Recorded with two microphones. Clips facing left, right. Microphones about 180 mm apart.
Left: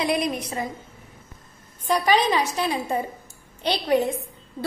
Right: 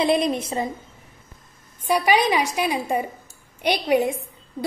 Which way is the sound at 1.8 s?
10° right (ahead or behind).